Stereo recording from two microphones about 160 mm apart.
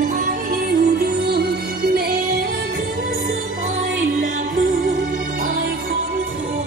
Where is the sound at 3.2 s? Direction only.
55° right (ahead or behind).